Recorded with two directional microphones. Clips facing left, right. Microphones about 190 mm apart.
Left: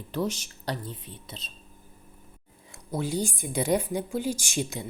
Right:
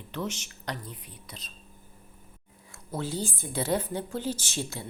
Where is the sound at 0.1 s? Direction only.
35° left (ahead or behind).